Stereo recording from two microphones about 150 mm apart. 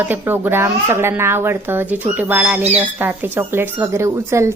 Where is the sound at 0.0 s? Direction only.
15° right (ahead or behind).